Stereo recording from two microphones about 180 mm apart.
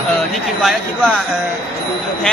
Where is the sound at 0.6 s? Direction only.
Centre (ahead or behind).